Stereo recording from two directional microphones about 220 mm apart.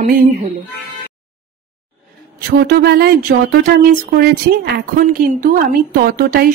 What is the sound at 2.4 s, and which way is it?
A woman's voice, 45° right (ahead or behind).